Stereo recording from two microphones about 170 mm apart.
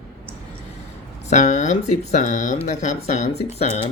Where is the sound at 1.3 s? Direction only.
45° left (ahead or behind).